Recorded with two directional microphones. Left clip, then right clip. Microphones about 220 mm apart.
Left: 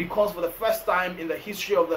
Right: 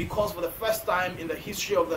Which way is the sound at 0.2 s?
20° right (ahead or behind).